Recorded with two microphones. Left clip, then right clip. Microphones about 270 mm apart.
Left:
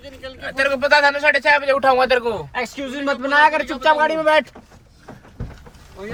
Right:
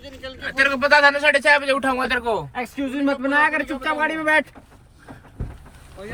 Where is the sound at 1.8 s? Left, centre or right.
Left.